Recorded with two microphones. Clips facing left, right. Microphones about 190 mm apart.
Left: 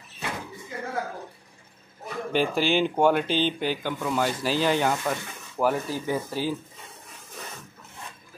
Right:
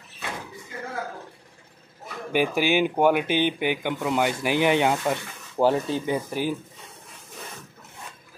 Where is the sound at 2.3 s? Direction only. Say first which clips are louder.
Right 1 dB; 10° right (ahead or behind).